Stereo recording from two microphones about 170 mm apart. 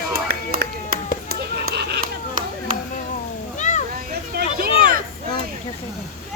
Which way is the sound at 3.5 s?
45° left (ahead or behind).